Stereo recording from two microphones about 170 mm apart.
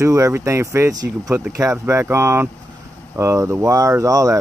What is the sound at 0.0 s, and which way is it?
Speech, 15° right (ahead or behind).